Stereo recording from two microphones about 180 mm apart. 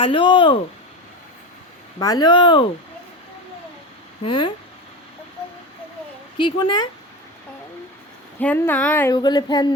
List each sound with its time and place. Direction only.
0.0 s speech: 30° left (ahead or behind)
2.0 s speech: 20° left (ahead or behind)
4.3 s speech: 25° left (ahead or behind)
6.3 s speech: 25° left (ahead or behind)
8.4 s speech: 10° left (ahead or behind)
9.1 s speech: 25° left (ahead or behind)